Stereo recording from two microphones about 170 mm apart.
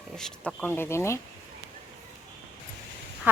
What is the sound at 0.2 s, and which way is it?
Speech, 5° left (ahead or behind).